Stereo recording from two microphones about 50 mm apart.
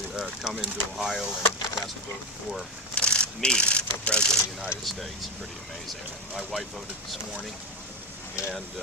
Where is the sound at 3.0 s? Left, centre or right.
Centre.